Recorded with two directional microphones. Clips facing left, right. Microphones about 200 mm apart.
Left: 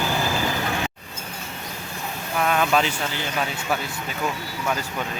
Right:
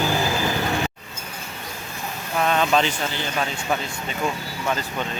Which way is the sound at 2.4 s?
5° left (ahead or behind).